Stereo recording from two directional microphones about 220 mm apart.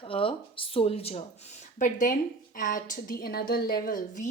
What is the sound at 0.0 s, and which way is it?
A woman's voice, 25° left (ahead or behind).